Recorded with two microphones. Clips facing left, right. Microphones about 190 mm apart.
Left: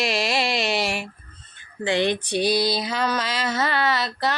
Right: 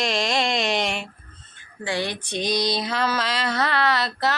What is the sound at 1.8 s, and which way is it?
Speech, 20° left (ahead or behind).